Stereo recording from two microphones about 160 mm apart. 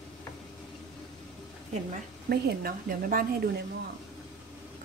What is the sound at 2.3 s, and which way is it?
Speech, 70° right (ahead or behind).